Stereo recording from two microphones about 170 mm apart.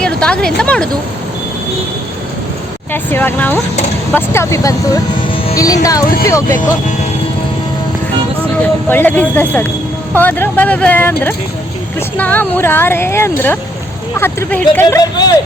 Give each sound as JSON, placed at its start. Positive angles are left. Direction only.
{"t": 0.0, "sound": "speech", "side_deg": 5}
{"t": 2.9, "sound": "speech", "side_deg": 10}
{"t": 8.9, "sound": "speech", "side_deg": 10}